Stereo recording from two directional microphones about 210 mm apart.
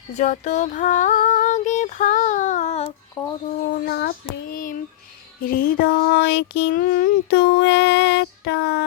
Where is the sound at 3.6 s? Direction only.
45° left (ahead or behind).